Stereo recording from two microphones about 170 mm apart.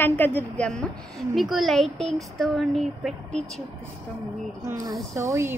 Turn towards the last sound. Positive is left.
turn(degrees=-15)  # may be behind; listen again after turning